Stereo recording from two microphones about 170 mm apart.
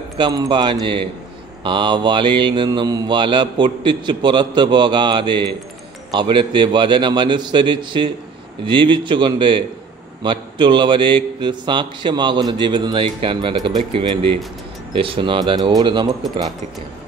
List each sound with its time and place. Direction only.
0.2 s mantra: 25° right (ahead or behind)
13.7 s speech: 30° right (ahead or behind)
14.9 s mantra: 30° right (ahead or behind)